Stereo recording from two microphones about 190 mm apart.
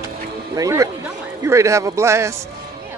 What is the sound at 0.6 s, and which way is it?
Speech, 15° right (ahead or behind).